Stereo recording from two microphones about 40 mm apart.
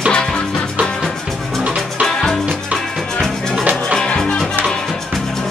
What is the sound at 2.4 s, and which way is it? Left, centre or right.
Music, right.